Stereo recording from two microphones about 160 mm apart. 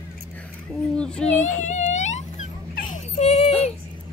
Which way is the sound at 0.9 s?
5° left (ahead or behind).